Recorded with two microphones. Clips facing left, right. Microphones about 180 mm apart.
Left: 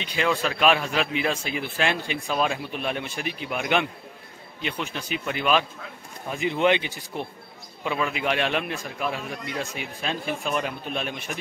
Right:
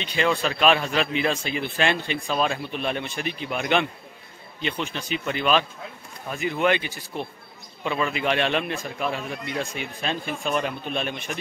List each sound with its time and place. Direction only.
0.0 s a man's voice: 5° left (ahead or behind)
6.3 s speech: 20° left (ahead or behind)
7.8 s a man's voice: 5° left (ahead or behind)